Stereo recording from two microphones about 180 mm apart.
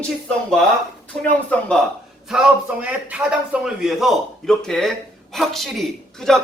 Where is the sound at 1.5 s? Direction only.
5° left (ahead or behind).